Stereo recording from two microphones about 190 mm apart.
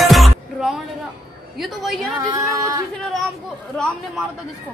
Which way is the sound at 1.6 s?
Centre (ahead or behind).